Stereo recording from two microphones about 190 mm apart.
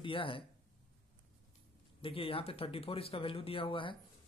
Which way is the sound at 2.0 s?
30° left (ahead or behind).